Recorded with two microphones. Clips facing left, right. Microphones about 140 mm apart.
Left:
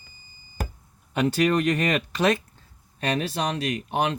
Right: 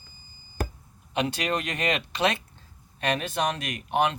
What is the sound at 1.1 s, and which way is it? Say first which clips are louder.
Speech: left 6 dB; 45° left (ahead or behind).